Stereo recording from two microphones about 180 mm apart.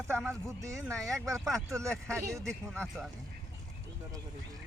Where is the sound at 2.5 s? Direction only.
5° left (ahead or behind).